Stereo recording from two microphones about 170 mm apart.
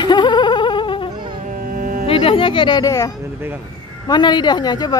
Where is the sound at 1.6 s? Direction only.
55° right (ahead or behind).